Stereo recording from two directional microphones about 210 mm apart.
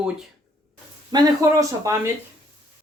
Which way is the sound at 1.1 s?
15° right (ahead or behind).